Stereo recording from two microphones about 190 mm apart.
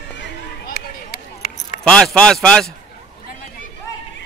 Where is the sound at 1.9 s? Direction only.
5° left (ahead or behind).